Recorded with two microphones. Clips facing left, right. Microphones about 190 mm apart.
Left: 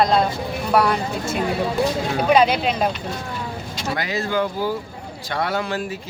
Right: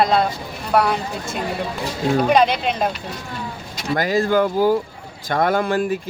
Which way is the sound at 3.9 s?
45° right (ahead or behind).